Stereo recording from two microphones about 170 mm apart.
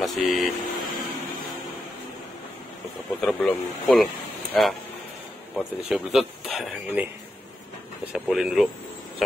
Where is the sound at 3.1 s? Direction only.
5° left (ahead or behind).